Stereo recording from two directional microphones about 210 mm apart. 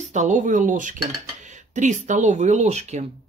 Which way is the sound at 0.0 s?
35° right (ahead or behind).